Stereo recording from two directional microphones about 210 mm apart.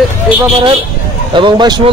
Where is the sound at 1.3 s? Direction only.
20° right (ahead or behind).